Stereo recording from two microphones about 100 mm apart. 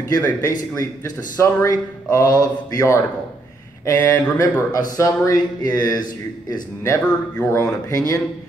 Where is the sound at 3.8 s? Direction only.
30° left (ahead or behind).